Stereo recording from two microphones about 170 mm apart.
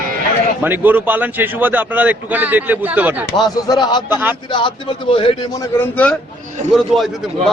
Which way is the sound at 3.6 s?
25° left (ahead or behind).